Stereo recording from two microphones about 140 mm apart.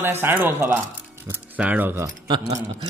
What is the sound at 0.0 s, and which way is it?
Speech, 15° right (ahead or behind).